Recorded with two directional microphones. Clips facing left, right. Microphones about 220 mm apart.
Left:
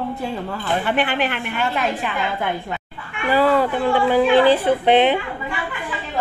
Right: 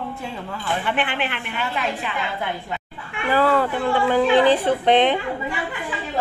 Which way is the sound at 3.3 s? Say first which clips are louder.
Left 2 dB; 15° left (ahead or behind).